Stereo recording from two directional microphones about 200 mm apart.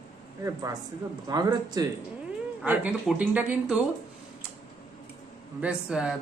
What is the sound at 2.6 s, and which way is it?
Speech, 5° right (ahead or behind).